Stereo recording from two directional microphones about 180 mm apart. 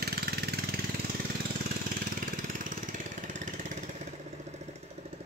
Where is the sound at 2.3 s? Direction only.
50° right (ahead or behind).